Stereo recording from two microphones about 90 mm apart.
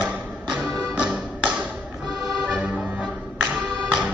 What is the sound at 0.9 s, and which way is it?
Music, 10° right (ahead or behind).